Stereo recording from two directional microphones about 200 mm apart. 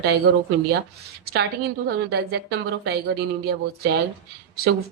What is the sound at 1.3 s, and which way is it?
Speech, 50° right (ahead or behind).